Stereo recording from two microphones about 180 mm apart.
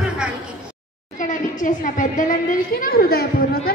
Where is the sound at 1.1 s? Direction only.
45° left (ahead or behind).